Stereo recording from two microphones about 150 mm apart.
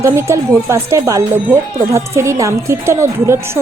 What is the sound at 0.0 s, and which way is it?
A woman's voice, 20° right (ahead or behind).